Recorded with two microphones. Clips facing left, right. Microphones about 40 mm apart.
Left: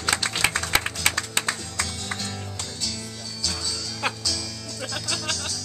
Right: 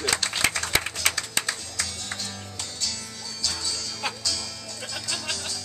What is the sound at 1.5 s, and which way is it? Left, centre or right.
Music, left.